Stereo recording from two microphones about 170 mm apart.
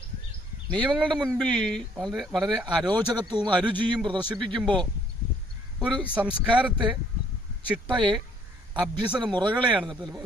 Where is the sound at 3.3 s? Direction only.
25° right (ahead or behind).